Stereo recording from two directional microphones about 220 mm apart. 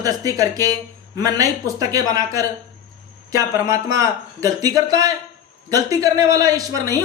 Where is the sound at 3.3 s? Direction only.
15° right (ahead or behind).